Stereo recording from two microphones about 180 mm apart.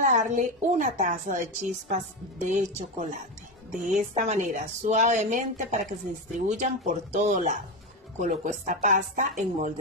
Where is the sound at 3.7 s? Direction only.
45° right (ahead or behind).